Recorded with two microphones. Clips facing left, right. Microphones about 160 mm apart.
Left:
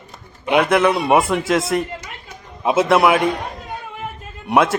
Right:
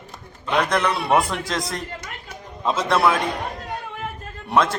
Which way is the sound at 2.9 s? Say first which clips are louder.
Left 4 dB; 20° left (ahead or behind).